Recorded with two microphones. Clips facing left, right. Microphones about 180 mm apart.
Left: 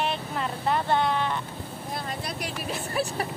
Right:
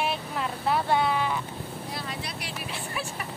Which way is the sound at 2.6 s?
40° left (ahead or behind).